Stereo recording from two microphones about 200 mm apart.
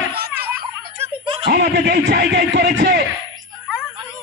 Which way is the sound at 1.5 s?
55° right (ahead or behind).